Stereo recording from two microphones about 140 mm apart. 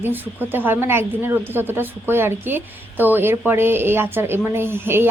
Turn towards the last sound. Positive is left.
turn(degrees=-15)  # may be behind; listen again after turning